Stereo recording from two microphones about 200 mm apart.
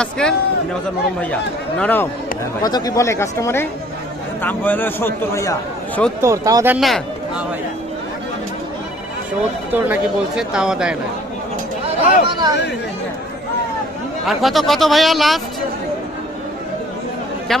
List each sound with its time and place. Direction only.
0.2 s a man's voice: 5° left (ahead or behind)
2.6 s a man's voice: 20° left (ahead or behind)
6.2 s speech: 15° right (ahead or behind)
6.8 s speech: centre (ahead or behind)
9.8 s speech: 5° right (ahead or behind)
11.8 s speech: 25° right (ahead or behind)
14.2 s speech: centre (ahead or behind)